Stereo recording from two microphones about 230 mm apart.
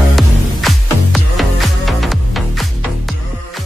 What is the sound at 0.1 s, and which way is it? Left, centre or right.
Music, centre.